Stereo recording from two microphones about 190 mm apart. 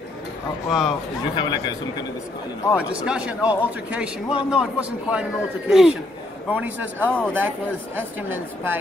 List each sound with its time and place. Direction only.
0.7 s a man's voice: centre (ahead or behind)
1.3 s a man's voice: 25° left (ahead or behind)
2.7 s a man's voice: 5° right (ahead or behind)
7.0 s speech: 10° left (ahead or behind)
7.3 s speech: 10° right (ahead or behind)